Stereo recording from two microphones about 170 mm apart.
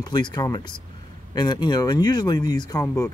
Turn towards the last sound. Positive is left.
turn(degrees=20)  # may be behind; listen again after turning